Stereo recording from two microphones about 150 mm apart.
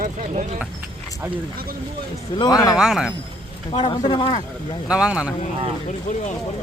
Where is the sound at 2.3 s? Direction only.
25° left (ahead or behind).